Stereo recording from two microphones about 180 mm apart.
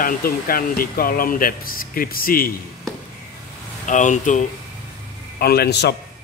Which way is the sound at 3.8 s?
45° left (ahead or behind).